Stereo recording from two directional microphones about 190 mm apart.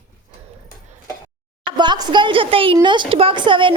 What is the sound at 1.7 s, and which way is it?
Speech, 25° right (ahead or behind).